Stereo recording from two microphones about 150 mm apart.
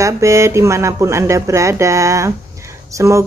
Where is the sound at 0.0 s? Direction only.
20° right (ahead or behind).